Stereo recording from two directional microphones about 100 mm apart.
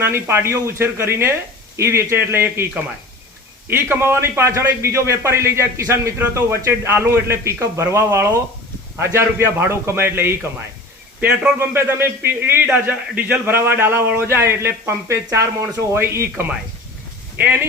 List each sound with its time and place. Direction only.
0.0 s a man's voice: 25° right (ahead or behind)
3.7 s a man's voice: 20° right (ahead or behind)